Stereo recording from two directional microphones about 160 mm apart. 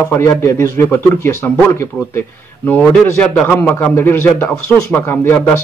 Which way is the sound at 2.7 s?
10° left (ahead or behind).